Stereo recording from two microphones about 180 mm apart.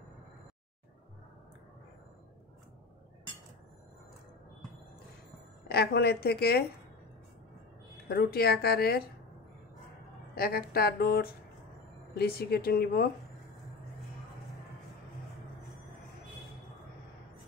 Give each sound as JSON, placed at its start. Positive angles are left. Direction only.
{"t": 5.7, "sound": "speech", "side_deg": 65}
{"t": 8.1, "sound": "speech", "side_deg": 60}
{"t": 10.3, "sound": "speech", "side_deg": 55}